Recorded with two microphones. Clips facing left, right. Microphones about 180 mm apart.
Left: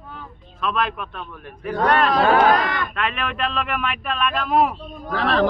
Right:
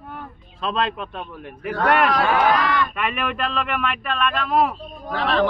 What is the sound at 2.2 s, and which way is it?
Speech, 45° left (ahead or behind).